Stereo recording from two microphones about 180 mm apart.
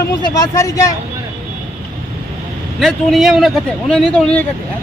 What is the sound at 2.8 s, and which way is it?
Speech, centre (ahead or behind).